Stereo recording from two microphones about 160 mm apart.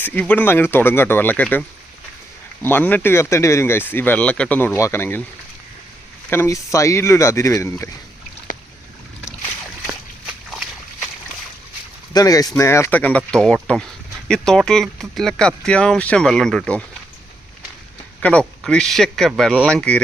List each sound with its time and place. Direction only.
0.0 s speech: 10° left (ahead or behind)
6.3 s speech: 15° left (ahead or behind)
12.1 s speech: 20° left (ahead or behind); by 16.8 s 5° left (ahead or behind)
18.2 s speech: 5° left (ahead or behind)